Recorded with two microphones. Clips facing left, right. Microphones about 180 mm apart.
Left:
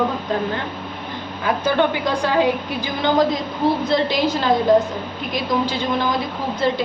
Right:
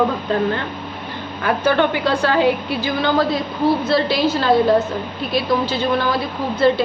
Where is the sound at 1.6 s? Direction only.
10° left (ahead or behind).